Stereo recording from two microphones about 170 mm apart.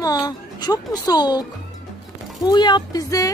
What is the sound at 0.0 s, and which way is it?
Speech, 20° left (ahead or behind).